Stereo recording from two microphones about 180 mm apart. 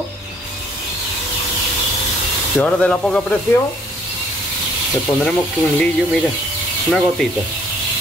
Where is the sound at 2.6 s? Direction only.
5° left (ahead or behind).